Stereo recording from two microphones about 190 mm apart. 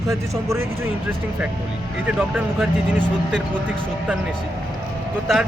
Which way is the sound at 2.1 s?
5° right (ahead or behind).